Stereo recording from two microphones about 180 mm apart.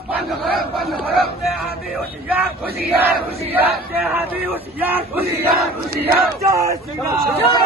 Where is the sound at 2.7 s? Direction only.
60° right (ahead or behind).